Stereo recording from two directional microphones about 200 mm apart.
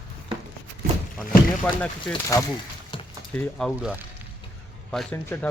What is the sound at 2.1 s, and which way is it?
Speech, 15° left (ahead or behind).